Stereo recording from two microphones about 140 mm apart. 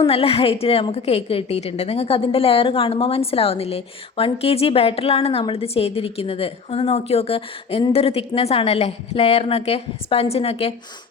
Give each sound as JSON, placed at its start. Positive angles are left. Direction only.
{"t": 0.0, "sound": "a woman's voice", "side_deg": 45}